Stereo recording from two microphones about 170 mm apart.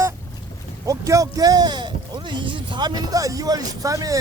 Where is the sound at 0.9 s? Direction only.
20° right (ahead or behind).